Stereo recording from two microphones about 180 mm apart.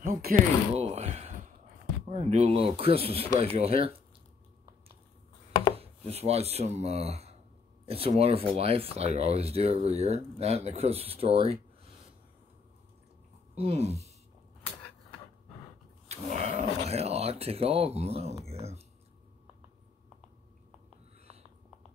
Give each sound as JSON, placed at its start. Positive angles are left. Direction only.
{"t": 0.0, "sound": "speech", "side_deg": -55}
{"t": 0.7, "sound": "a sound", "side_deg": -35}
{"t": 2.0, "sound": "speech", "side_deg": -40}
{"t": 5.8, "sound": "speech", "side_deg": -35}
{"t": 13.6, "sound": "speech", "side_deg": -35}
{"t": 16.1, "sound": "speech", "side_deg": -40}
{"t": 18.4, "sound": "a sound", "side_deg": -35}